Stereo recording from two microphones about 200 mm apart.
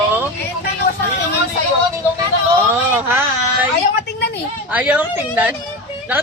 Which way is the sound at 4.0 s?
55° left (ahead or behind).